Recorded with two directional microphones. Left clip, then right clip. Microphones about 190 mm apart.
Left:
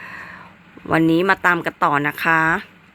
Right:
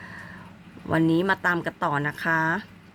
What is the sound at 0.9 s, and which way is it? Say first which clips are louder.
Speech: left 6 dB; 25° left (ahead or behind).